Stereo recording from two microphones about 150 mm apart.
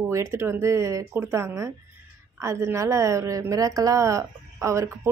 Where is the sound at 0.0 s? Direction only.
20° right (ahead or behind).